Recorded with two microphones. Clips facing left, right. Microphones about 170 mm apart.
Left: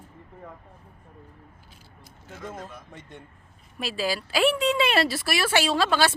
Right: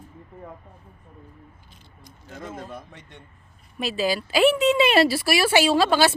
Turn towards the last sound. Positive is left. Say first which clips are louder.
# right 4 dB
turn(degrees=-5)  # may be behind; listen again after turning